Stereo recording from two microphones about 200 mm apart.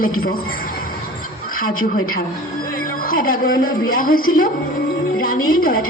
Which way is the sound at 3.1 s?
45° left (ahead or behind).